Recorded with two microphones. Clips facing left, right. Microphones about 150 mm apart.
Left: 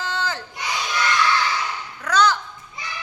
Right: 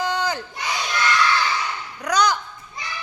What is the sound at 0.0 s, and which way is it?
Crowd, 15° right (ahead or behind).